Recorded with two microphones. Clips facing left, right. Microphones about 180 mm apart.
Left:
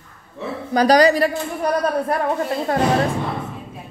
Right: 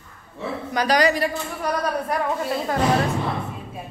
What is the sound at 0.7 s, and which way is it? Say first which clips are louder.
Speech: left 6 dB; 35° left (ahead or behind).